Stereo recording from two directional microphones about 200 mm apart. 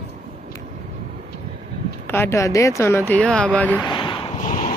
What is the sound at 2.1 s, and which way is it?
Speech, 10° left (ahead or behind).